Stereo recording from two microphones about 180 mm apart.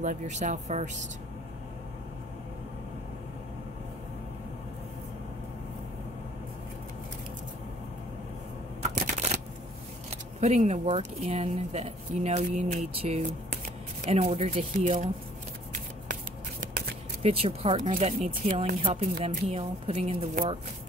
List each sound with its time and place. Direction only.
0.0 s a woman's voice: 45° right (ahead or behind)
8.8 s shuffling cards: 40° right (ahead or behind)
10.4 s a woman's voice: 35° right (ahead or behind)
17.2 s a woman's voice: 30° right (ahead or behind)